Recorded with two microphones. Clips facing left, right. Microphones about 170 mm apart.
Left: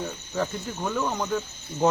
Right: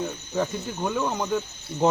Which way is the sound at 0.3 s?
10° right (ahead or behind).